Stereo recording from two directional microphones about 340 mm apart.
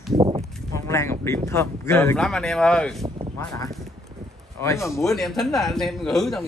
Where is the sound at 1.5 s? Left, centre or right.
Centre.